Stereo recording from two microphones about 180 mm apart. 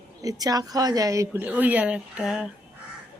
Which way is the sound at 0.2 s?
20° right (ahead or behind).